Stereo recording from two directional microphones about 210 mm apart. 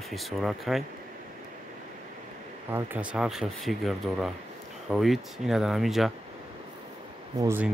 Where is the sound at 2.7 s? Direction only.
5° right (ahead or behind).